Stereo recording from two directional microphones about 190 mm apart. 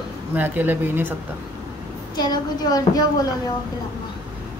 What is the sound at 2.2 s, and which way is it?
A woman's voice, 20° left (ahead or behind).